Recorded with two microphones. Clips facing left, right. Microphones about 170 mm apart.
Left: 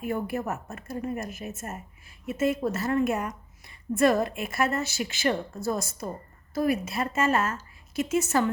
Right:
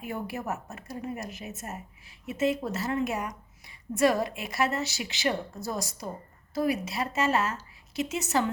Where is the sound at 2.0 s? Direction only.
50° left (ahead or behind).